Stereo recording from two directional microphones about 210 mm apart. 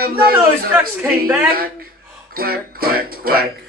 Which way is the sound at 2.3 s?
45° right (ahead or behind).